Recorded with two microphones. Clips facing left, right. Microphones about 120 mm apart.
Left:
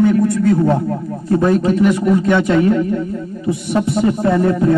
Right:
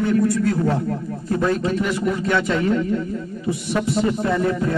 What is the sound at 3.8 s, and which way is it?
Speech, 30° left (ahead or behind).